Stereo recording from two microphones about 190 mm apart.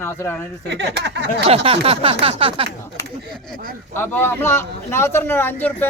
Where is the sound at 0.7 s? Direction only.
65° right (ahead or behind).